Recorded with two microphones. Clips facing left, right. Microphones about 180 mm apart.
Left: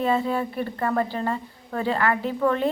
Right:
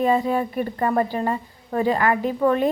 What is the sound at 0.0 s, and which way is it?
A woman's voice, 15° right (ahead or behind).